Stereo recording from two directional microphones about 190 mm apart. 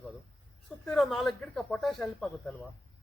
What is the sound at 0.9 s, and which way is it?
A man's voice, centre (ahead or behind).